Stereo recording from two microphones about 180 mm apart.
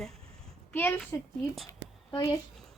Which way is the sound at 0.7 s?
10° left (ahead or behind).